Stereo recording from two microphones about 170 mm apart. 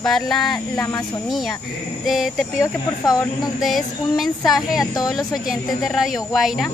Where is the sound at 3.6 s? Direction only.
Centre (ahead or behind).